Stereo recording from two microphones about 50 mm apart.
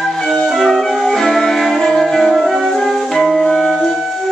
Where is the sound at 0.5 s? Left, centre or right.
Centre.